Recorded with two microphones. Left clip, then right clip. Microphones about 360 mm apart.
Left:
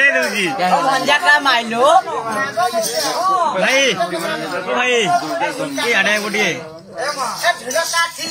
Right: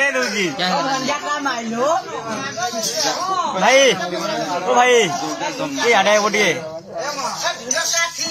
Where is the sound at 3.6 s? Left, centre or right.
Centre.